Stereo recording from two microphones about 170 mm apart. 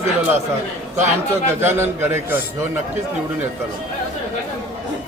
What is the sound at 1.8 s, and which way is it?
Speech, 15° right (ahead or behind).